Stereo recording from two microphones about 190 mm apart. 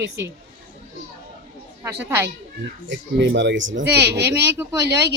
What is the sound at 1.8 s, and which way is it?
Speech, 15° right (ahead or behind).